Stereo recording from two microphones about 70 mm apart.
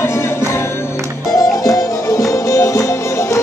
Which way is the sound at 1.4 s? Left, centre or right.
Left.